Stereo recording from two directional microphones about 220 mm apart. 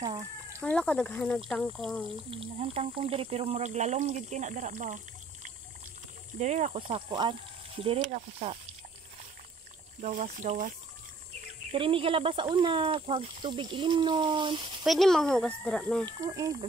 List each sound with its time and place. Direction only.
0.6 s speech: 5° left (ahead or behind)
2.4 s speech: 25° right (ahead or behind)
10.0 s speech: 35° right (ahead or behind)
11.7 s speech: 25° right (ahead or behind)
14.8 s speech: centre (ahead or behind)
16.1 s speech: 15° right (ahead or behind)